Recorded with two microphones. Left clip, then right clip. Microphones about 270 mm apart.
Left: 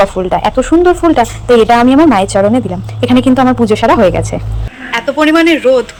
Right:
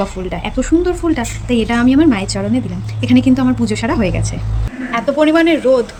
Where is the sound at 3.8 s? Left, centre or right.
Left.